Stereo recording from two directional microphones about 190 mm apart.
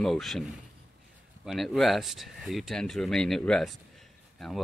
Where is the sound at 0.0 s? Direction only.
Centre (ahead or behind).